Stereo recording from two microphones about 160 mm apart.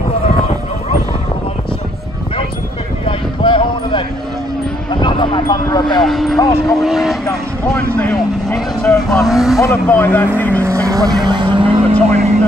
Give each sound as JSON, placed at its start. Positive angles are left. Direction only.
{"t": 3.1, "sound": "a sound", "side_deg": 30}
{"t": 5.0, "sound": "vehicle", "side_deg": 30}
{"t": 6.0, "sound": "vehicle", "side_deg": 0}
{"t": 6.3, "sound": "dog", "side_deg": 25}
{"t": 6.8, "sound": "vehicle", "side_deg": 0}
{"t": 7.6, "sound": "vehicle", "side_deg": 10}
{"t": 9.6, "sound": "speech", "side_deg": 15}
{"t": 10.6, "sound": "vehicle", "side_deg": -20}